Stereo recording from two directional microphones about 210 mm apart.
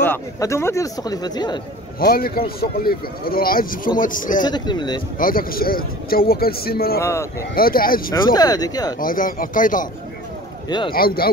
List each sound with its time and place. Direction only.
0.0 s speech: 10° left (ahead or behind)
2.0 s speech: 45° left (ahead or behind)
4.4 s speech: 20° left (ahead or behind)
5.2 s speech: 45° left (ahead or behind)
7.0 s speech: 15° left (ahead or behind)
7.5 s speech: 45° left (ahead or behind)
8.1 s speech: 20° left (ahead or behind)
9.0 s speech: 40° left (ahead or behind)
10.9 s speech: 45° left (ahead or behind)